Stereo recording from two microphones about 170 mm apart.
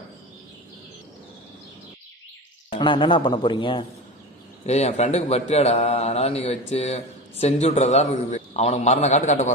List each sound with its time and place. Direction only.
2.6 s a man's voice: 30° left (ahead or behind)
4.6 s speech: 40° left (ahead or behind)